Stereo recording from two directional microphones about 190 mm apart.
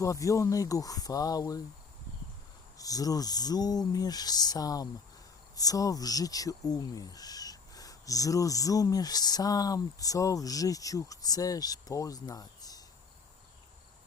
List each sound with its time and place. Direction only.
0.0 s speech: 15° left (ahead or behind)
2.7 s speech: 20° left (ahead or behind)